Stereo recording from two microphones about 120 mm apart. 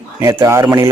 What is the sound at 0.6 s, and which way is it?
Speech, 30° right (ahead or behind).